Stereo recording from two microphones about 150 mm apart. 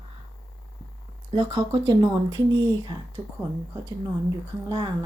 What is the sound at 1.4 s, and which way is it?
Speech, 35° right (ahead or behind).